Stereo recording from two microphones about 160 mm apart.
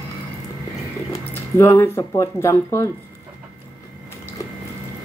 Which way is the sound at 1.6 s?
15° left (ahead or behind).